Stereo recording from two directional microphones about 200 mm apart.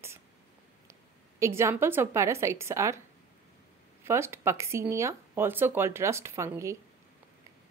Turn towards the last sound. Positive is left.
turn(degrees=-15)  # may be behind; listen again after turning